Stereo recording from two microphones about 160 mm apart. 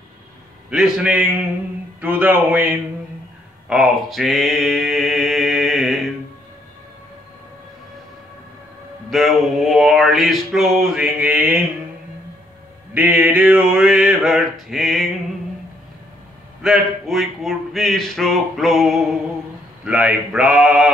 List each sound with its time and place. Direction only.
0.7 s mantra: 5° right (ahead or behind)
2.0 s speech: 10° right (ahead or behind)
3.6 s mantra: centre (ahead or behind)
9.1 s mantra: centre (ahead or behind)
12.9 s mantra: 10° right (ahead or behind)
16.6 s mantra: centre (ahead or behind)